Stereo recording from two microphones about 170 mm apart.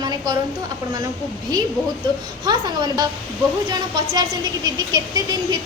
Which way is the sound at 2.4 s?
25° right (ahead or behind).